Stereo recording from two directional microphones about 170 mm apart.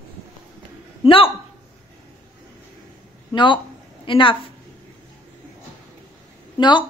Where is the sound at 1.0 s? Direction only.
30° left (ahead or behind).